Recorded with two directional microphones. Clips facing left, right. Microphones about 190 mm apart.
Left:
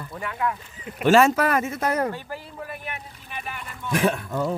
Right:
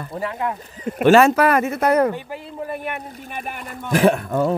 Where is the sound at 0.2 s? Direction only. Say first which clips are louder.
Right 2 dB; 30° right (ahead or behind).